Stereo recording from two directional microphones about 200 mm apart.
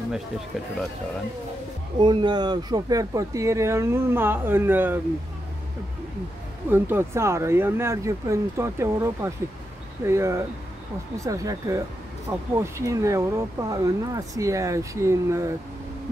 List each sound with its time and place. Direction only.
2.0 s speech: 20° right (ahead or behind)
6.7 s speech: 10° right (ahead or behind)